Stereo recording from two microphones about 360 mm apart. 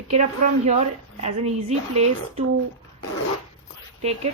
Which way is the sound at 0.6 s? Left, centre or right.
Centre.